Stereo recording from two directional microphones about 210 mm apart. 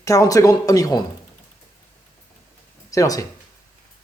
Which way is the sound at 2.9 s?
15° left (ahead or behind).